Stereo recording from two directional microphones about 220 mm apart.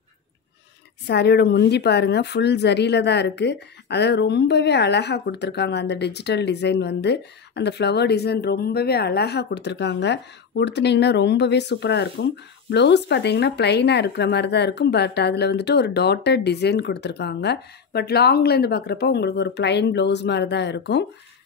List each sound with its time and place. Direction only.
1.0 s a woman's voice: 50° left (ahead or behind)